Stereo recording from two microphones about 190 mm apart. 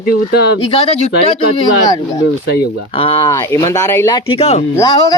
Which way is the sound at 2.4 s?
55° left (ahead or behind).